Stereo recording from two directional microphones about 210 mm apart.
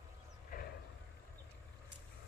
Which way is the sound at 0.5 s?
45° left (ahead or behind).